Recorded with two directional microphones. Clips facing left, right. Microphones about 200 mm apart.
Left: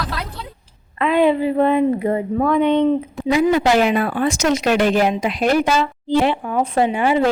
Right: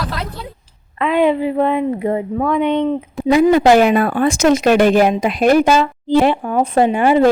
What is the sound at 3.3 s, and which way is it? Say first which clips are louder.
Speech: right 5 dB; 50° right (ahead or behind).